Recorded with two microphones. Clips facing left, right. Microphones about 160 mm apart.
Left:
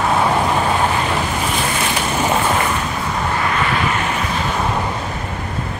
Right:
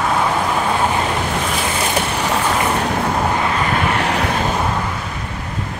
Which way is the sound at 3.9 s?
70° right (ahead or behind).